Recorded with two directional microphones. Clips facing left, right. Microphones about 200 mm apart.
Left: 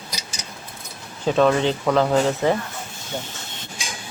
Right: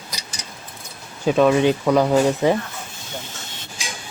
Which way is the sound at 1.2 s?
10° right (ahead or behind).